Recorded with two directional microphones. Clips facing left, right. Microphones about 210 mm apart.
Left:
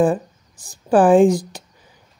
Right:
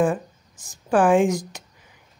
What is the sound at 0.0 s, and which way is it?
A woman's voice, 35° left (ahead or behind).